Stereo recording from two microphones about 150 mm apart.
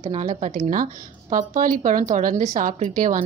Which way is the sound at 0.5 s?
60° right (ahead or behind).